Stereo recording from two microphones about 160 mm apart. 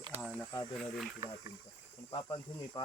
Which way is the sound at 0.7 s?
Centre (ahead or behind).